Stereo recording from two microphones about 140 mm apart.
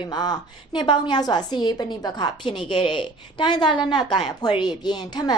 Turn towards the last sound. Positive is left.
turn(degrees=30)  # may be behind; listen again after turning